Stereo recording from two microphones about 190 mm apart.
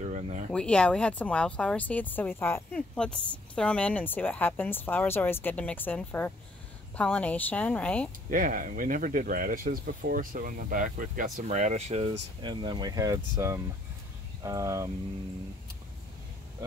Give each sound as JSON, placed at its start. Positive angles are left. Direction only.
{"t": 0.0, "sound": "speech", "side_deg": -40}
{"t": 0.5, "sound": "speech", "side_deg": 5}
{"t": 8.3, "sound": "speech", "side_deg": -45}